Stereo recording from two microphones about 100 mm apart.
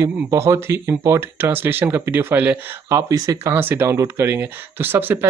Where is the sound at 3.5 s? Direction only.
20° right (ahead or behind).